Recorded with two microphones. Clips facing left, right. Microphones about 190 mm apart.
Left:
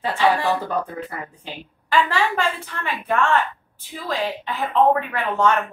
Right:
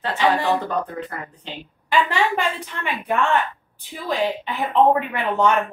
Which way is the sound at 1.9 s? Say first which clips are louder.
Even; 15° right (ahead or behind).